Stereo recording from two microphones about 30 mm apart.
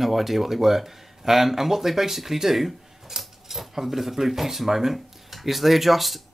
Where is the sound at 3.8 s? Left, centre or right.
Centre.